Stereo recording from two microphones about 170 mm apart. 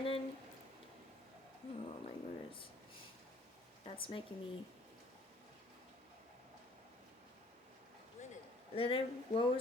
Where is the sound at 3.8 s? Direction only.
30° left (ahead or behind).